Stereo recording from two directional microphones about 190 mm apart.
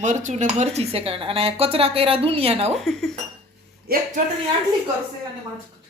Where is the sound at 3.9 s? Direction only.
55° right (ahead or behind).